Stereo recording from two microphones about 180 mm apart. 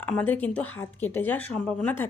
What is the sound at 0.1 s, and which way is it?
A woman's voice, 10° left (ahead or behind).